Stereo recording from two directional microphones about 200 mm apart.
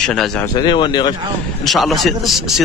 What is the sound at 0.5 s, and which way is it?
Speech, 20° left (ahead or behind).